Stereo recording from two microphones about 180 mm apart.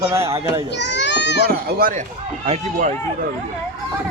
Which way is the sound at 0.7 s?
75° left (ahead or behind).